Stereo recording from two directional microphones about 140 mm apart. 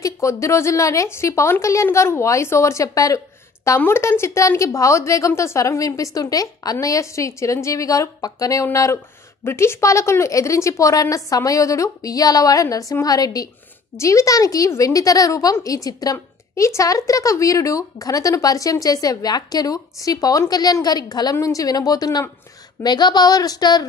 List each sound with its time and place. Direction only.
0.0 s a woman's voice: 20° left (ahead or behind)